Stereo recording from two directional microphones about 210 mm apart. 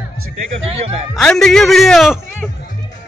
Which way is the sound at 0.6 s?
25° right (ahead or behind).